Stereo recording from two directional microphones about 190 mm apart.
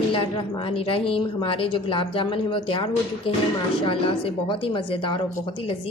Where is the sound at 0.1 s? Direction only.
25° left (ahead or behind).